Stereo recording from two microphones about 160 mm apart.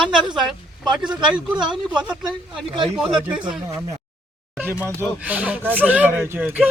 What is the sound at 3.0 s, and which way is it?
Speech, 5° right (ahead or behind).